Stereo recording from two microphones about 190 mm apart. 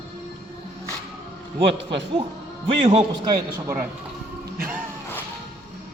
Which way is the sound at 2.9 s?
25° right (ahead or behind).